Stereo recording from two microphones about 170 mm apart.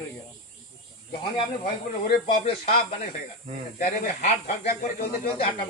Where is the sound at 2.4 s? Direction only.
35° left (ahead or behind).